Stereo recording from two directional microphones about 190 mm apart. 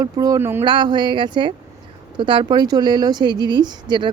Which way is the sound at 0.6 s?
25° right (ahead or behind).